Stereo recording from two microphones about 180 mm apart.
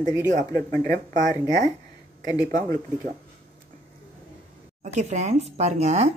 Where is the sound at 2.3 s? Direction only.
20° left (ahead or behind).